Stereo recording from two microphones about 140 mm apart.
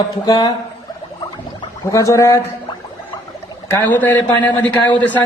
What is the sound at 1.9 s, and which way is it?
Speech, 20° left (ahead or behind).